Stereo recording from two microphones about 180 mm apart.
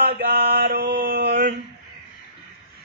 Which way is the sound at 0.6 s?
60° right (ahead or behind).